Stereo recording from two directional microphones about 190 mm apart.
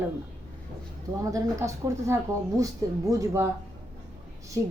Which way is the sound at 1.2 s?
15° right (ahead or behind).